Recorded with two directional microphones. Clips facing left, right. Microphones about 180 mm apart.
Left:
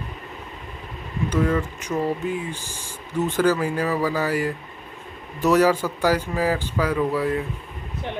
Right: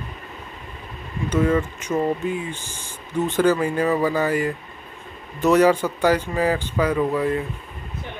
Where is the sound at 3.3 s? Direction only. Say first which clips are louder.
Right 2 dB; centre (ahead or behind).